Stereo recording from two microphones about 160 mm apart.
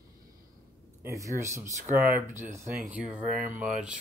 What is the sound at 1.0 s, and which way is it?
Speech, 20° right (ahead or behind).